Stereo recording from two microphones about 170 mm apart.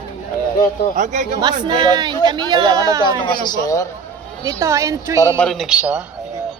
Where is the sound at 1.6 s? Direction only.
25° right (ahead or behind).